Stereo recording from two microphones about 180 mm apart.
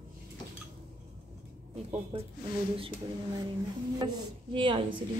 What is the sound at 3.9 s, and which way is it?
Speech, 25° right (ahead or behind).